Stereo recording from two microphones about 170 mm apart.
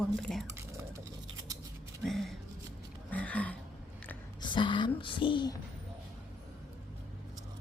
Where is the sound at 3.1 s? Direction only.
10° left (ahead or behind).